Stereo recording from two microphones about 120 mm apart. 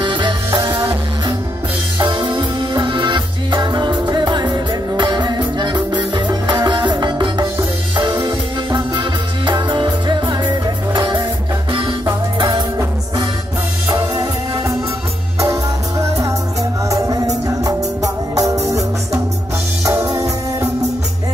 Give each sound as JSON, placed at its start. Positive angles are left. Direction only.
{"t": 0.0, "sound": "music", "side_deg": -40}
{"t": 2.0, "sound": "music", "side_deg": -40}
{"t": 12.4, "sound": "music", "side_deg": -40}
{"t": 13.8, "sound": "music", "side_deg": -40}
{"t": 15.5, "sound": "music", "side_deg": -25}
{"t": 20.1, "sound": "music", "side_deg": -25}